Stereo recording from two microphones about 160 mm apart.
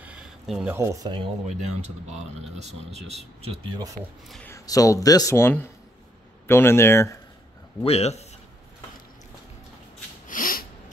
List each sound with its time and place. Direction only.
0.0 s a sound: 5° right (ahead or behind)
0.7 s speech: 20° right (ahead or behind)
1.5 s speech: 45° right (ahead or behind)
4.0 s speech: 55° right (ahead or behind)
4.5 s speech: 20° left (ahead or behind)
7.8 s speech: 40° left (ahead or behind)
10.2 s sneeze: 60° left (ahead or behind)